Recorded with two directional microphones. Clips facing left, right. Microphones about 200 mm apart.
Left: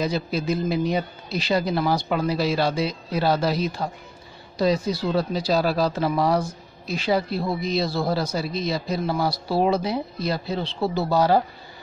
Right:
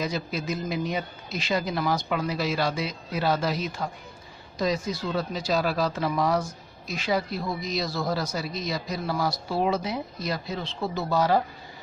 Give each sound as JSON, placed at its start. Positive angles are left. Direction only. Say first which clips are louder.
{"t": 0.0, "sound": "speech", "louder": "left 5 dB", "side_deg": 30}